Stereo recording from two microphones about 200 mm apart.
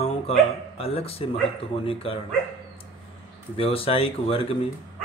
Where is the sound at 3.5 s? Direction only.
25° left (ahead or behind).